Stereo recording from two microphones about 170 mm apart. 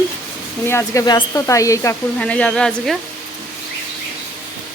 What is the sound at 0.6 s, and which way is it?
Speech, 15° left (ahead or behind).